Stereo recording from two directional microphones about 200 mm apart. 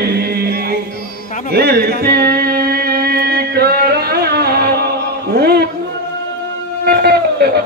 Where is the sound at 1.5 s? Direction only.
50° right (ahead or behind).